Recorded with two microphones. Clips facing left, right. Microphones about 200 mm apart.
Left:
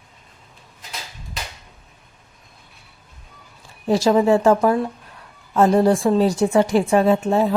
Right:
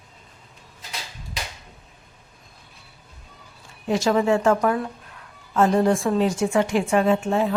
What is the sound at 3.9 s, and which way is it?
A woman's voice, 35° left (ahead or behind).